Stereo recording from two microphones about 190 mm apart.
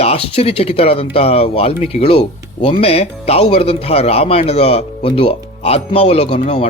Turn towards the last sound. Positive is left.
turn(degrees=30)  # may be behind; listen again after turning